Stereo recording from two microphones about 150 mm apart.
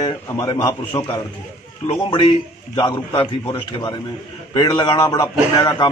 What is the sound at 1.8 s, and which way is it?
A man's voice, 30° left (ahead or behind).